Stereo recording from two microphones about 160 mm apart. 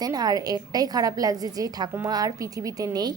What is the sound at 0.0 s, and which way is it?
A woman's voice, 25° right (ahead or behind).